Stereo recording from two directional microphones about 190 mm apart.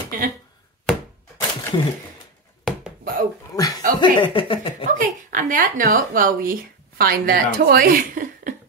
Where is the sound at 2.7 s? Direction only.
Centre (ahead or behind).